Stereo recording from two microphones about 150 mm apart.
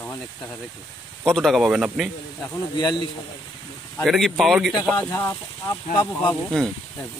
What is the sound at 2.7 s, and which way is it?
Speech, 30° left (ahead or behind).